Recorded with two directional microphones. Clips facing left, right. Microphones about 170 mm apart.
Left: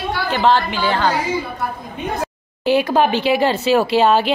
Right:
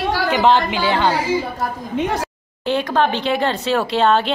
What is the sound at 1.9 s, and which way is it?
Speech, 90° right.